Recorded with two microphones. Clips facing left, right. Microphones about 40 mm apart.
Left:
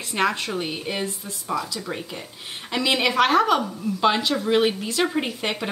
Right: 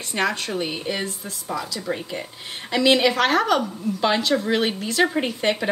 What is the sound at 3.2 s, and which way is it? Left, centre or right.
Speech, centre.